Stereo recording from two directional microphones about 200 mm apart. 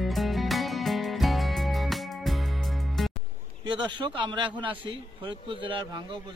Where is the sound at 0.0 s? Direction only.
Centre (ahead or behind).